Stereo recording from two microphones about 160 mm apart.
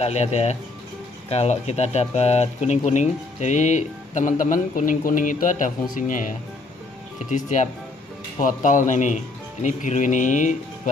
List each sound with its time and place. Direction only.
0.0 s speech: 45° left (ahead or behind)
7.2 s speech: 50° left (ahead or behind)